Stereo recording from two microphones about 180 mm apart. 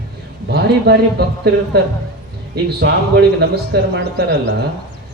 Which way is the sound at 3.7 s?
65° right (ahead or behind).